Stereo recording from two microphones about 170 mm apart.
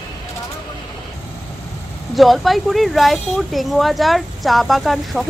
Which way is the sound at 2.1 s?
Centre (ahead or behind).